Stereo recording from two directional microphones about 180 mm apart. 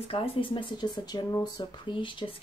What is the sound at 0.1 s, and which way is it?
Speech, 30° left (ahead or behind).